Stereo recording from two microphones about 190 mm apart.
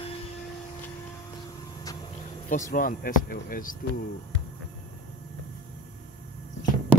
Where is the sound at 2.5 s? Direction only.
45° left (ahead or behind).